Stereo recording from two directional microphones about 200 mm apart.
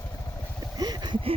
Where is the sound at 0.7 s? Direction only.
20° right (ahead or behind).